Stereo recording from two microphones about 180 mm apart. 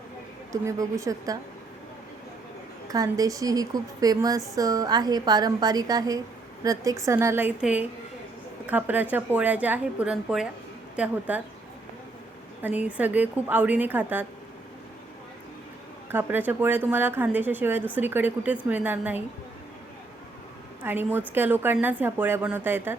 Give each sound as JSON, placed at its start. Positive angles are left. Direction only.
{"t": 0.5, "sound": "speech", "side_deg": -20}
{"t": 2.9, "sound": "a woman's voice", "side_deg": -20}
{"t": 12.6, "sound": "speech", "side_deg": -10}
{"t": 16.0, "sound": "speech", "side_deg": -10}
{"t": 20.8, "sound": "speech", "side_deg": -10}